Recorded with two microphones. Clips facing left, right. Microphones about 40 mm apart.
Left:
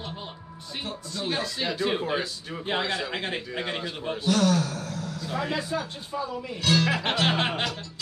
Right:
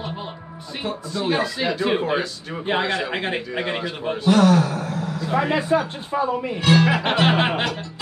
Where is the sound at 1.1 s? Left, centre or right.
Right.